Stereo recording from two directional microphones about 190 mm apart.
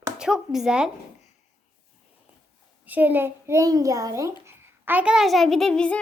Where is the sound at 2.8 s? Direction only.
10° right (ahead or behind).